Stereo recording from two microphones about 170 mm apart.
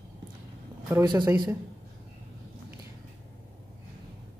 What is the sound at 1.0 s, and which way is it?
Cutlery, 25° right (ahead or behind).